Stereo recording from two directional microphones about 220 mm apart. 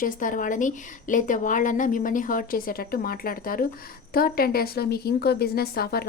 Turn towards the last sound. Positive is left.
turn(degrees=45)  # may be behind; listen again after turning